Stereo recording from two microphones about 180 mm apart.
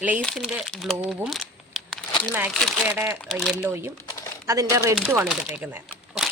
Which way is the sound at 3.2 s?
5° left (ahead or behind).